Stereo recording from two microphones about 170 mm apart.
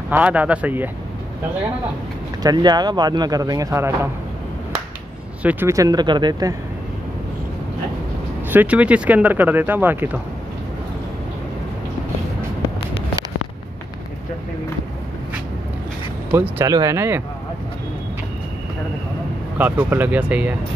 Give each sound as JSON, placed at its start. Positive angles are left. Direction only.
{"t": 0.1, "sound": "speech", "side_deg": -10}
{"t": 2.4, "sound": "speech", "side_deg": -25}
{"t": 5.4, "sound": "speech", "side_deg": -10}
{"t": 8.5, "sound": "speech", "side_deg": -10}
{"t": 16.3, "sound": "speech", "side_deg": -15}
{"t": 19.6, "sound": "speech", "side_deg": -10}